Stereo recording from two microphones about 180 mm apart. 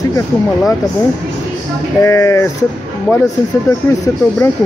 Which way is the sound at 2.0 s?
15° left (ahead or behind).